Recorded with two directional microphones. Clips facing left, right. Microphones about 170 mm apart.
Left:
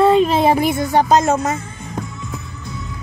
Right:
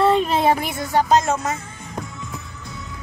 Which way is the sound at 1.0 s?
45° left (ahead or behind).